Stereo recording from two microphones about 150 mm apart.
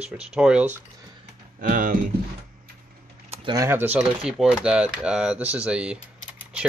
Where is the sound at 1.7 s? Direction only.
60° right (ahead or behind).